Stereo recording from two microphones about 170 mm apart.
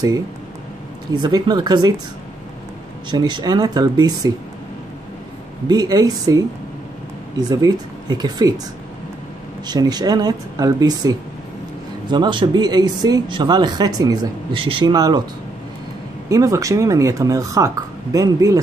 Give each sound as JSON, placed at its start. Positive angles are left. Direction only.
{"t": 1.2, "sound": "speech", "side_deg": -25}
{"t": 3.1, "sound": "speech", "side_deg": -25}
{"t": 5.7, "sound": "speech", "side_deg": -25}
{"t": 9.7, "sound": "speech", "side_deg": -25}
{"t": 16.3, "sound": "speech", "side_deg": -20}